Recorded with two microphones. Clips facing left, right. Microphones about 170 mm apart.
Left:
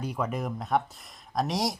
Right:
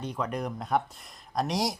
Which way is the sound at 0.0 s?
5° left (ahead or behind).